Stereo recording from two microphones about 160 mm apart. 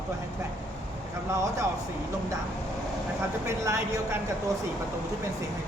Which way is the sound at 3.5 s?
20° right (ahead or behind).